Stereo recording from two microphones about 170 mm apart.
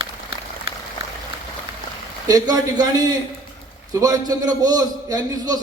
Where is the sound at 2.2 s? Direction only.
20° right (ahead or behind).